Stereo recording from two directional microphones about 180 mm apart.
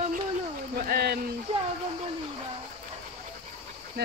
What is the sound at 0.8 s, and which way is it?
Speech, 60° right (ahead or behind).